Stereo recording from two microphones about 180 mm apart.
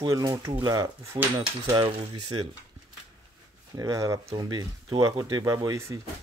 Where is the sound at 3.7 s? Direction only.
20° right (ahead or behind).